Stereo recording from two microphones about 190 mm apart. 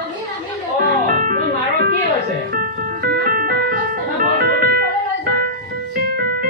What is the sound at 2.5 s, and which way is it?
Organ, 45° right (ahead or behind).